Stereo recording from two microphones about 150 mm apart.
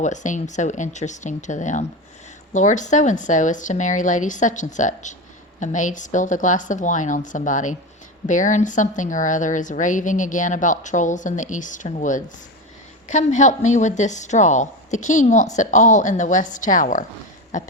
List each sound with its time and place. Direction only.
0.0 s a woman's voice: 55° left (ahead or behind)